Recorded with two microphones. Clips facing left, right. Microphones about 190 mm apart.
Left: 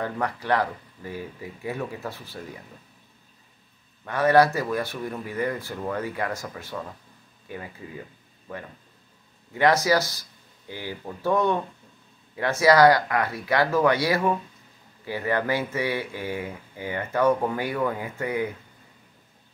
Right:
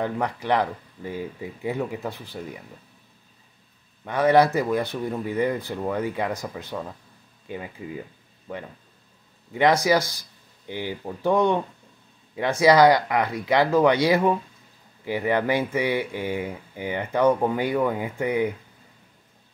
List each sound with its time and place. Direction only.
0.0 s speech: 15° right (ahead or behind)
4.0 s speech: 15° right (ahead or behind)
9.5 s speech: 15° right (ahead or behind)